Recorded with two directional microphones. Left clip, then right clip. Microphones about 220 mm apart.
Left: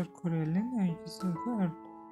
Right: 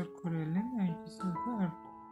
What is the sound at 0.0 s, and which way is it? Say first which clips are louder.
Music: left 3 dB; 20° left (ahead or behind).